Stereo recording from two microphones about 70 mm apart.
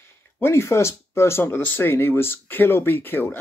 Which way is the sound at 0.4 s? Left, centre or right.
Left.